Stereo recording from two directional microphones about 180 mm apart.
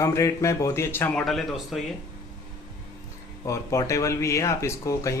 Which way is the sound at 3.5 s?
15° left (ahead or behind).